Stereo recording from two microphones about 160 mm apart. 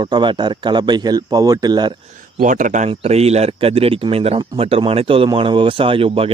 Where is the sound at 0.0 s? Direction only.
30° right (ahead or behind).